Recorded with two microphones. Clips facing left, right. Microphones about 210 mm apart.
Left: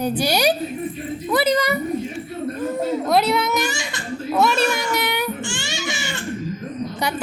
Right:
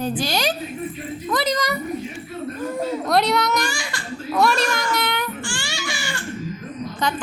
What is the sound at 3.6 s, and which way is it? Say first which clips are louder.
Laughter: left 2 dB; 20° left (ahead or behind).